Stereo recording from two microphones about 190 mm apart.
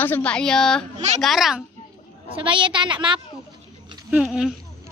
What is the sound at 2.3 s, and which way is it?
Speech, 25° right (ahead or behind).